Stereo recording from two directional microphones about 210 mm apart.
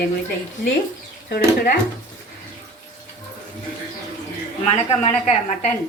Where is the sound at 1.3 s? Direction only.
45° left (ahead or behind).